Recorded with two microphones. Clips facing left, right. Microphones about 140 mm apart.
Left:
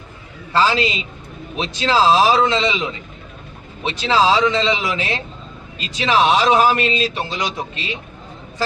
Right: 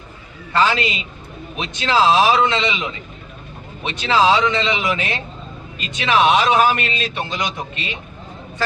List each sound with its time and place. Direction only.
0.5 s a man's voice: 30° left (ahead or behind)
3.8 s a man's voice: 30° left (ahead or behind)